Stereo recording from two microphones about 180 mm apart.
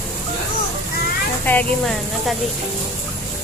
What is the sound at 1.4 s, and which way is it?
Speech, 10° left (ahead or behind).